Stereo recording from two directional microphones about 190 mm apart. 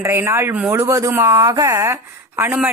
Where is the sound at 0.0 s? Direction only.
15° right (ahead or behind).